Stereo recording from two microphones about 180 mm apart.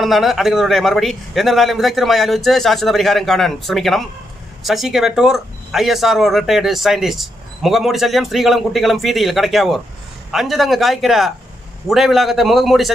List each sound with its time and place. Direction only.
0.0 s speech: centre (ahead or behind)